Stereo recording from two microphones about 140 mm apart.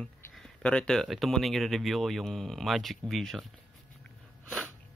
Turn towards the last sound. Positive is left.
turn(degrees=10)  # may be behind; listen again after turning